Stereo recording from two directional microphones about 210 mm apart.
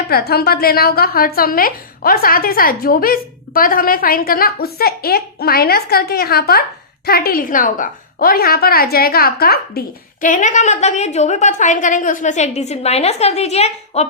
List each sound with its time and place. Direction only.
0.1 s a woman's voice: 50° left (ahead or behind); by 14.1 s 30° left (ahead or behind)